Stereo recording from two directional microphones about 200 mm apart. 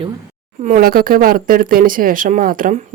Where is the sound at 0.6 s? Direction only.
40° right (ahead or behind).